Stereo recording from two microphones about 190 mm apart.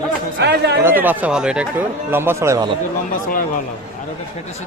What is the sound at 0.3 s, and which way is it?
Chatter, 65° right (ahead or behind).